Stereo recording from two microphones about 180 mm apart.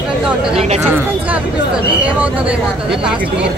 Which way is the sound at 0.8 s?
10° right (ahead or behind).